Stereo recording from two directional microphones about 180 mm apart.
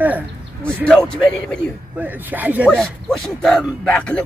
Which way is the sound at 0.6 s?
5° left (ahead or behind).